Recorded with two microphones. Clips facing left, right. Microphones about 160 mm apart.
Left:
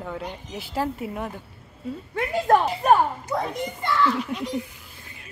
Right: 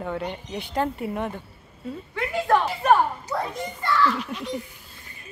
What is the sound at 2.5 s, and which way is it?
Speech, 40° left (ahead or behind).